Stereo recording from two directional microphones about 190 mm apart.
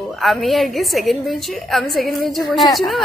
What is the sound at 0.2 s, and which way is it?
A woman's voice, centre (ahead or behind).